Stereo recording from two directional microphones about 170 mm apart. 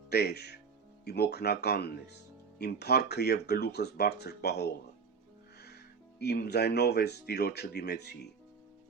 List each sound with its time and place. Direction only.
0.1 s speech: 70° left (ahead or behind)
6.1 s speech: 70° left (ahead or behind)